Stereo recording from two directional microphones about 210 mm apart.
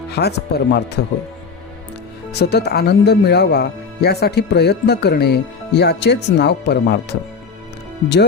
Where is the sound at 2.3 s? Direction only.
50° left (ahead or behind).